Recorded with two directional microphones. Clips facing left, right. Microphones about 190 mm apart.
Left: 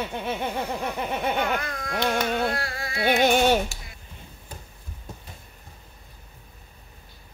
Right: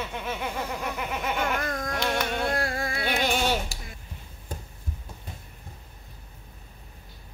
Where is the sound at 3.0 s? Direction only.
55° left (ahead or behind).